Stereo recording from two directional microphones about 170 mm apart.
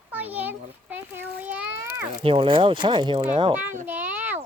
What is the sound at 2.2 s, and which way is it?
Speech, 30° right (ahead or behind).